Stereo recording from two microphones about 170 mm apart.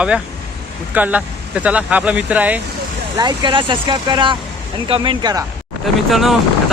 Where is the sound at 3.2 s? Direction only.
25° right (ahead or behind).